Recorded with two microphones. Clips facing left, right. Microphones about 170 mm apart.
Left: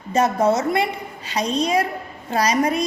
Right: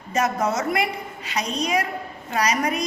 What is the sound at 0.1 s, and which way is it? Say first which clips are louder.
A woman's voice: left 5 dB; 30° left (ahead or behind).